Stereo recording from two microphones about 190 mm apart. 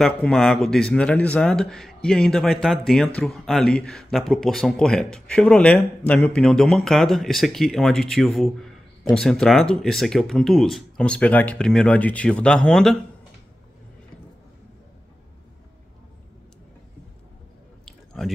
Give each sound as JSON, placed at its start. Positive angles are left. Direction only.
{"t": 0.0, "sound": "speech", "side_deg": 0}
{"t": 17.8, "sound": "chewing", "side_deg": 0}